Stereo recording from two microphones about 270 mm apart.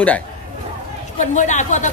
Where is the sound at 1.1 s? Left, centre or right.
Left.